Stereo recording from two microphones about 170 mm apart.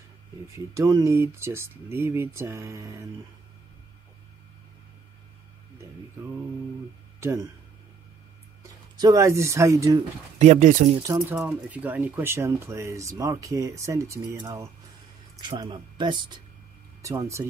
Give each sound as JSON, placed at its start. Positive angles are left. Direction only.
{"t": 0.5, "sound": "speech", "side_deg": -20}
{"t": 8.9, "sound": "speech", "side_deg": -20}
{"t": 10.4, "sound": "speech", "side_deg": -45}
{"t": 11.0, "sound": "speech", "side_deg": -20}
{"t": 11.3, "sound": "speech", "side_deg": -10}